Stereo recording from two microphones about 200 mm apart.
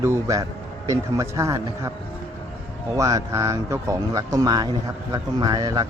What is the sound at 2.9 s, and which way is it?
Speech, 15° right (ahead or behind).